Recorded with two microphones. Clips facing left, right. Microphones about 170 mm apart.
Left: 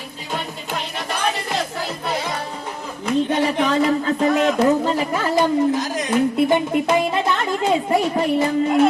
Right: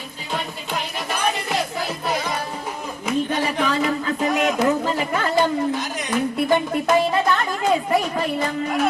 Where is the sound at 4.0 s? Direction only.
30° left (ahead or behind).